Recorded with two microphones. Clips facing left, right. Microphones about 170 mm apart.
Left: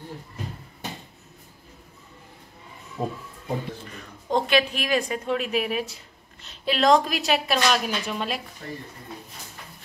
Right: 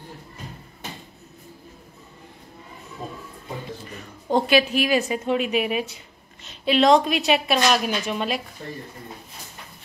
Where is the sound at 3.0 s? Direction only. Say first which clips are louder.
Left 6 dB; 60° left (ahead or behind).